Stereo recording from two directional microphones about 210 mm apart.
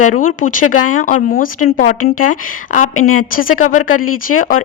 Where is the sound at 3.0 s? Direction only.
80° left.